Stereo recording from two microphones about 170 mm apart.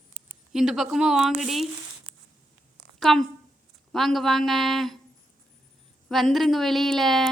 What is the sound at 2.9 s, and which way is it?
A man's voice, centre (ahead or behind).